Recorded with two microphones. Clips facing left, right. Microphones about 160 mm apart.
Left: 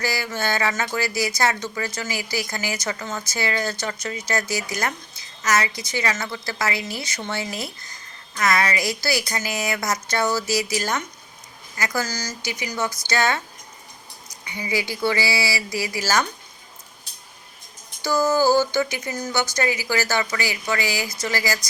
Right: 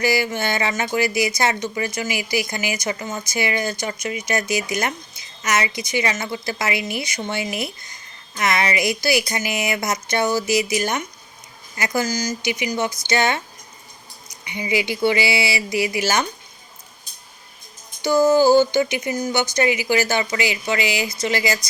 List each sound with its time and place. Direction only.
0.0 s speech: 20° right (ahead or behind)
18.0 s speech: 20° right (ahead or behind)